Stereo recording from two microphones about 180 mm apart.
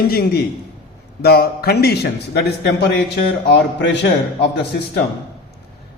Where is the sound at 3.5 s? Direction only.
70° left (ahead or behind).